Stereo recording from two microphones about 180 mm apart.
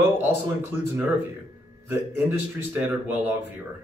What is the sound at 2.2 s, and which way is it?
Speech, 10° right (ahead or behind).